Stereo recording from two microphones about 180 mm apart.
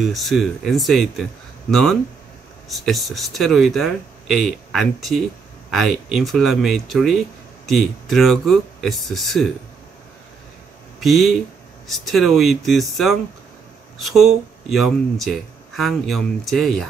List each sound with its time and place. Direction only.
0.0 s speech: centre (ahead or behind)
11.0 s speech: centre (ahead or behind)